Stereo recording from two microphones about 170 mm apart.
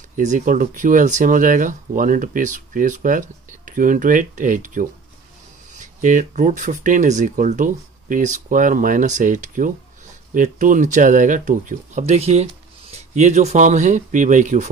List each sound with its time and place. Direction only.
0.2 s speech: 50° right (ahead or behind)